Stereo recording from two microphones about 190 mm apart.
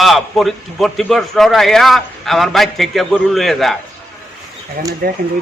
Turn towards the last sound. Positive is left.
turn(degrees=-50)  # may be behind; listen again after turning